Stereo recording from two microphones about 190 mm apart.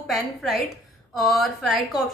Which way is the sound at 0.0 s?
Centre (ahead or behind).